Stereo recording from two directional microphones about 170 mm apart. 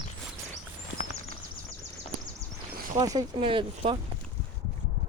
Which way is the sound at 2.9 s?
20° right (ahead or behind).